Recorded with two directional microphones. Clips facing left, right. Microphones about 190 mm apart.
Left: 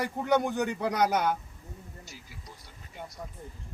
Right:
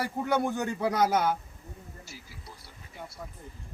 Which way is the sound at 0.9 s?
15° left (ahead or behind).